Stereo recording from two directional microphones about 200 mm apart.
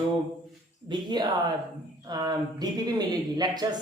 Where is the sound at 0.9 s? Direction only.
20° right (ahead or behind).